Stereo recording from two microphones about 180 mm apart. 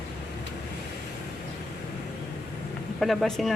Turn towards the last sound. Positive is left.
turn(degrees=0)  # may be behind; listen again after turning